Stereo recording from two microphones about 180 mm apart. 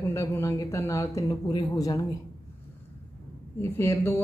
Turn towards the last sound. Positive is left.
turn(degrees=15)  # may be behind; listen again after turning